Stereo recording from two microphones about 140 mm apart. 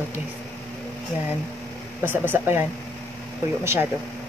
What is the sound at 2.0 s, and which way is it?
A woman's voice, 15° right (ahead or behind).